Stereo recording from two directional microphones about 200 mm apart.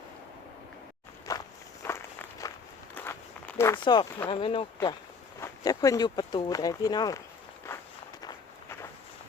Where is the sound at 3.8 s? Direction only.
20° left (ahead or behind).